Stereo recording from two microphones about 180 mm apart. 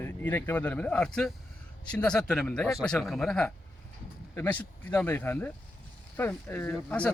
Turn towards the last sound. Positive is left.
turn(degrees=5)  # may be behind; listen again after turning